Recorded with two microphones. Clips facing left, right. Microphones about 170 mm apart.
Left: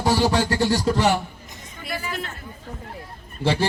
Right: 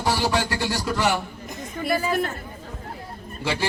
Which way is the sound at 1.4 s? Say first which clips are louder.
Right 9 dB; 50° right (ahead or behind).